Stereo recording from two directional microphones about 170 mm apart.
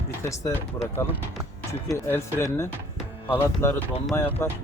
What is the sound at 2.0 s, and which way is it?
Speech, 15° left (ahead or behind).